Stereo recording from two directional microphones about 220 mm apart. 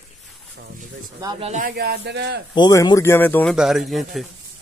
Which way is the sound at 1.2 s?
15° right (ahead or behind).